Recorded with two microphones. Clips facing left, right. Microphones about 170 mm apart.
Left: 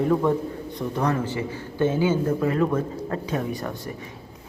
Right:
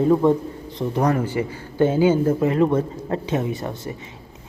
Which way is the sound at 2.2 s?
30° right (ahead or behind).